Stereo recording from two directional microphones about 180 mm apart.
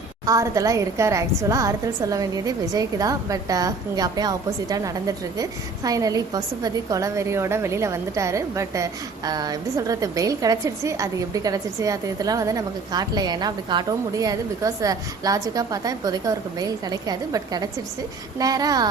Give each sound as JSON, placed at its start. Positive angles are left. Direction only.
{"t": 0.3, "sound": "a woman's voice", "side_deg": -20}